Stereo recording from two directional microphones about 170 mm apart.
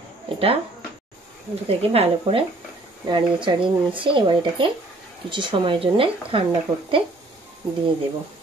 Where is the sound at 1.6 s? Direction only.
35° right (ahead or behind).